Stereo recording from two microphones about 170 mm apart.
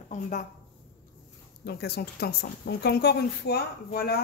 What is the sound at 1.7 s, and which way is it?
A woman's voice, 70° left (ahead or behind).